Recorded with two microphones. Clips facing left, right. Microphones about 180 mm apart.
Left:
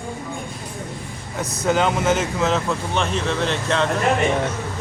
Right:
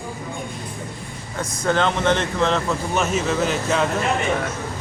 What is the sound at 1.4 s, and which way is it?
Speech, 10° left (ahead or behind).